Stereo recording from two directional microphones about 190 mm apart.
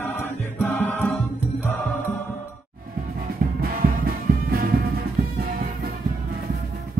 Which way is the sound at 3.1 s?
50° right (ahead or behind).